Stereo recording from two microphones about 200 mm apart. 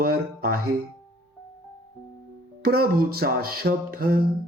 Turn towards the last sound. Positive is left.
turn(degrees=-50)  # may be behind; listen again after turning